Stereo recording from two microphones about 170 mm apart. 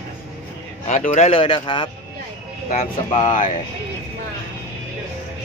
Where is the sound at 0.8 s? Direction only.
45° left (ahead or behind).